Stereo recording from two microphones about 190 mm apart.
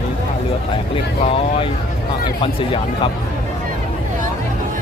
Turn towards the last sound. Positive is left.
turn(degrees=25)  # may be behind; listen again after turning